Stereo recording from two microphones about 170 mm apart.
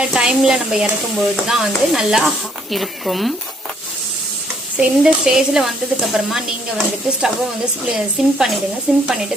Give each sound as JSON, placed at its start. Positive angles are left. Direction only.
{"t": 0.0, "sound": "speech", "side_deg": -5}
{"t": 4.8, "sound": "speech", "side_deg": -5}